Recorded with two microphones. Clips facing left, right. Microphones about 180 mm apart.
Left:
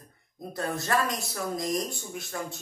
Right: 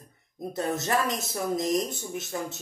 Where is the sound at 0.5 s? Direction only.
20° right (ahead or behind).